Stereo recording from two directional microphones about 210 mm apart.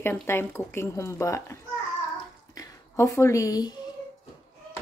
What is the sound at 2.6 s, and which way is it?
A woman's voice, 15° left (ahead or behind).